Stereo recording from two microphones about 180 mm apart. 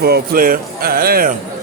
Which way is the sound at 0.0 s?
60° right (ahead or behind).